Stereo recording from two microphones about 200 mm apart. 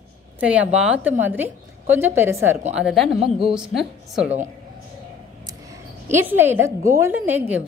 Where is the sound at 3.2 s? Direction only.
25° right (ahead or behind).